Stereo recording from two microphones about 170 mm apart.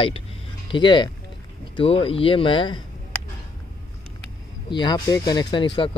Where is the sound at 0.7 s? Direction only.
25° left (ahead or behind).